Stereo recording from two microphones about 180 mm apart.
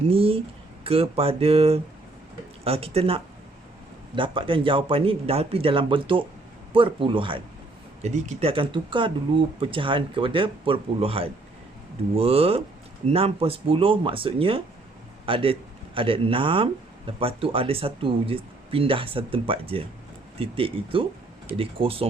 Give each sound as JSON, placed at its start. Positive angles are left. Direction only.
{"t": 0.1, "sound": "a sound", "side_deg": -30}
{"t": 0.9, "sound": "speech", "side_deg": -30}
{"t": 8.0, "sound": "speech", "side_deg": -40}